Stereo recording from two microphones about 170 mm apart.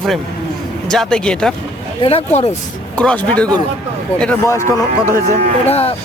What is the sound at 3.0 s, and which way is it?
A man's voice, 5° left (ahead or behind).